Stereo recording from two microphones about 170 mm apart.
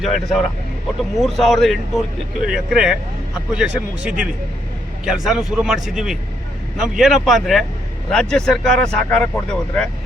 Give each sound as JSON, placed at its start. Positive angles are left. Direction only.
{"t": 0.0, "sound": "speech", "side_deg": 0}